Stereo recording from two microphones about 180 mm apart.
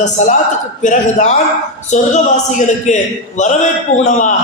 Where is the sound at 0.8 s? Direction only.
40° left (ahead or behind).